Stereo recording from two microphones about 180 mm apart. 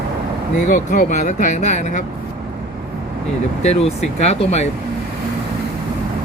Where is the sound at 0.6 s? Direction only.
45° left (ahead or behind).